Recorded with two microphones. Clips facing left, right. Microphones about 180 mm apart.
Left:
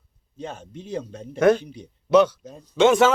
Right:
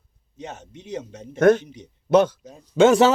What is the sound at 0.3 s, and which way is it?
Speech, 20° right (ahead or behind).